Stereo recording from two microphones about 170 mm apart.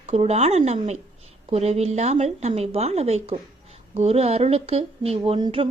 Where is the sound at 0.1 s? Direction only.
40° right (ahead or behind).